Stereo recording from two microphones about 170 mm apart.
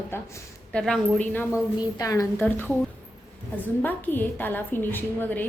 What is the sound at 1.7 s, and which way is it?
Speech, 20° left (ahead or behind).